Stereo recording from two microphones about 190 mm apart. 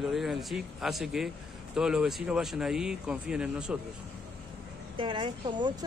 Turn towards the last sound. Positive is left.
turn(degrees=-25)  # may be behind; listen again after turning